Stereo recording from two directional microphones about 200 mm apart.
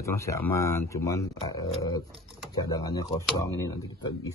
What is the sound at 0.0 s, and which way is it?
Speech, 15° left (ahead or behind).